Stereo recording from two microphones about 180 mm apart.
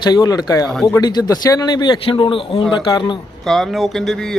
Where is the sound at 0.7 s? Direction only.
Centre (ahead or behind).